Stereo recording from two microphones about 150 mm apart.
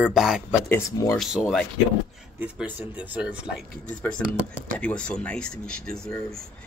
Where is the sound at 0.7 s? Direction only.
15° left (ahead or behind).